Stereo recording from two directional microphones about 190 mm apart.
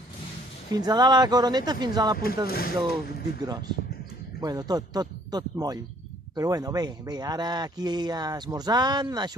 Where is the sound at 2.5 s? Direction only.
55° left (ahead or behind).